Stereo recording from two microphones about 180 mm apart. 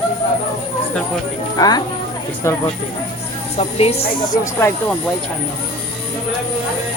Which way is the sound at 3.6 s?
35° left (ahead or behind).